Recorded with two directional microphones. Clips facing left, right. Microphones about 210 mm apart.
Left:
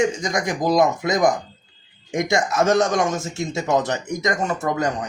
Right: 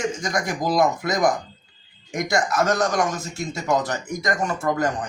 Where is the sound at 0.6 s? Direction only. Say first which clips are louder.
Left 3 dB; 20° left (ahead or behind).